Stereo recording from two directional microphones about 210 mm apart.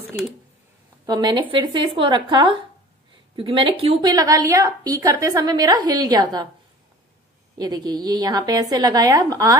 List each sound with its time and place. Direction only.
0.1 s a woman's voice: 10° right (ahead or behind)
7.5 s a woman's voice: 20° right (ahead or behind)